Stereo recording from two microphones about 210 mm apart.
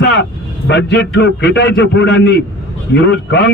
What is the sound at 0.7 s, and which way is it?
A man's voice, 55° left (ahead or behind).